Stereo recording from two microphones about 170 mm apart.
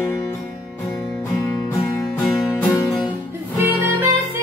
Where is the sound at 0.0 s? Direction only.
15° left (ahead or behind).